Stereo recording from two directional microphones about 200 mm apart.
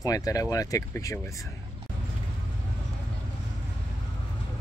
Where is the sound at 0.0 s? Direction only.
15° left (ahead or behind).